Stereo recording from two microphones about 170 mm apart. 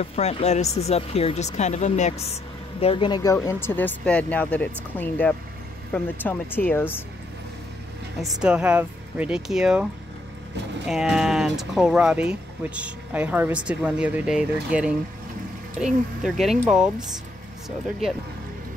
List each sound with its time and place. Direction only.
0.0 s speech: 40° left (ahead or behind)
3.3 s speech: 15° left (ahead or behind)
8.2 s speech: 5° right (ahead or behind)
10.9 s speech: centre (ahead or behind)